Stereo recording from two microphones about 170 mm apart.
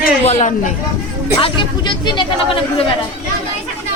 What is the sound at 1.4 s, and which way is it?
Speech, 30° left (ahead or behind).